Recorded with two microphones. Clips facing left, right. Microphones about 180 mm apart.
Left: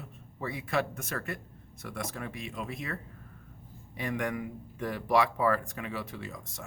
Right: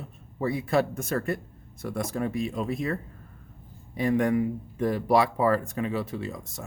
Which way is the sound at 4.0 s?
35° right (ahead or behind).